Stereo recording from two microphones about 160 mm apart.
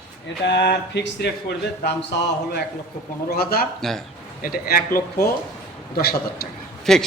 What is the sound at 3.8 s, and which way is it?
Speech, centre (ahead or behind).